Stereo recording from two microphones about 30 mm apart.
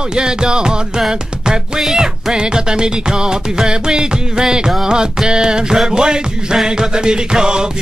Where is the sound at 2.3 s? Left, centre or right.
Right.